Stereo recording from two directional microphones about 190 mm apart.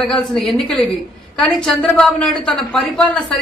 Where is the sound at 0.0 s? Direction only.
Centre (ahead or behind).